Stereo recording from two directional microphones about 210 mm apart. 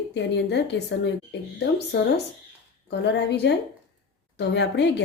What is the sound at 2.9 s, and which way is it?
A woman's voice, 50° left (ahead or behind).